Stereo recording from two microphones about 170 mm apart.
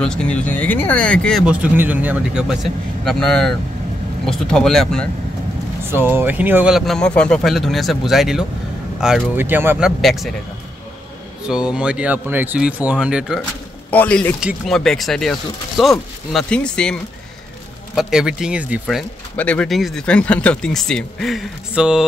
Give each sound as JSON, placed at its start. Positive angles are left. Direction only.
{"t": 0.0, "sound": "speech", "side_deg": 5}
{"t": 1.4, "sound": "speech", "side_deg": -5}
{"t": 5.9, "sound": "speech", "side_deg": -10}
{"t": 9.8, "sound": "speech", "side_deg": 0}
{"t": 11.4, "sound": "speech", "side_deg": -5}
{"t": 13.8, "sound": "a man's voice", "side_deg": 10}
{"t": 19.3, "sound": "speech", "side_deg": 10}